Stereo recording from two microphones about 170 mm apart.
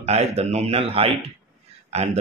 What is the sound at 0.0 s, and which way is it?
Speech, 40° right (ahead or behind).